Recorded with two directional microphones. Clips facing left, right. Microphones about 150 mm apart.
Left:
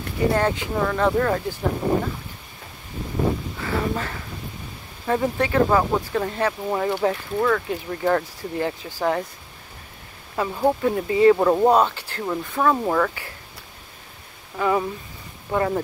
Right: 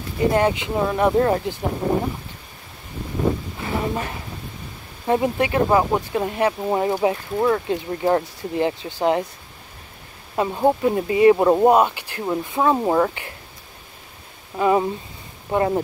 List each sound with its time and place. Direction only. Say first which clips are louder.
0.3 s speech: right 3 dB; 20° right (ahead or behind)
3.6 s speech: right 1 dB; 20° right (ahead or behind)
10.3 s speech: right 2 dB; 20° right (ahead or behind)
14.6 s speech: right 4 dB; 20° right (ahead or behind)